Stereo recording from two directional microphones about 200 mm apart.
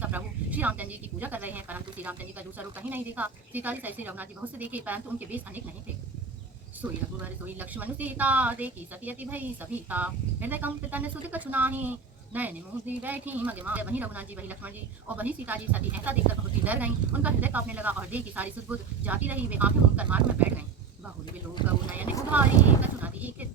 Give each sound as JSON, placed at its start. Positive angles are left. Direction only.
{"t": 0.0, "sound": "speech", "side_deg": -10}
{"t": 6.8, "sound": "speech", "side_deg": -20}
{"t": 7.4, "sound": "speech", "side_deg": -10}
{"t": 22.3, "sound": "speech", "side_deg": -10}